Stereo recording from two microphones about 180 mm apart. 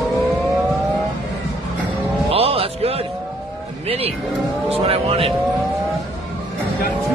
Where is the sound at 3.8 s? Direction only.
35° right (ahead or behind).